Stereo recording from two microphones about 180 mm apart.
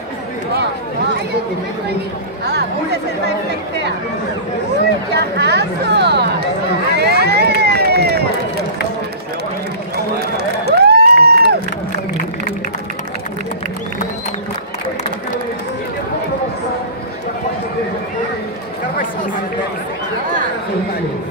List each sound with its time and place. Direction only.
2.4 s speech: 70° right (ahead or behind)
5.1 s speech: 65° right (ahead or behind)
7.0 s run: 65° right (ahead or behind)
10.7 s a sound: 65° right (ahead or behind)